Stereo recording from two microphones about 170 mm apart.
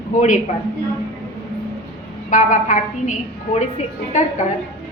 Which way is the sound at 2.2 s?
50° left (ahead or behind).